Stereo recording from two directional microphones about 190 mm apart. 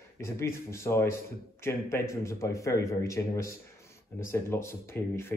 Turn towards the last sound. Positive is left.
turn(degrees=10)  # may be behind; listen again after turning